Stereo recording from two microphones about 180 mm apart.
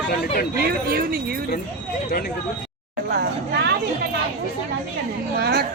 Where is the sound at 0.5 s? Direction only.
55° right (ahead or behind).